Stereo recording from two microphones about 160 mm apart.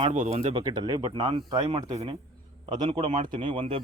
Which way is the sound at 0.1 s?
40° right (ahead or behind).